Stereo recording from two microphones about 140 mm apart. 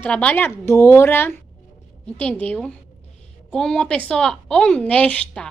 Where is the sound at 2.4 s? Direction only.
10° left (ahead or behind).